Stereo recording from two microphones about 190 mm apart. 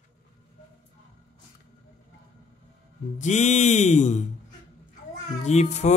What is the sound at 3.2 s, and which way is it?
Speech, 40° left (ahead or behind).